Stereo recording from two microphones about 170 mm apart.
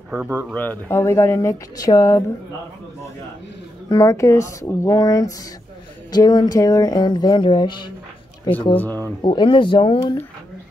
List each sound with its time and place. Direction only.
0.1 s speech: 15° right (ahead or behind)
0.6 s speech: 10° left (ahead or behind)
3.9 s speech: 20° left (ahead or behind)
8.7 s speech: 10° left (ahead or behind)
9.2 s speech: 30° left (ahead or behind)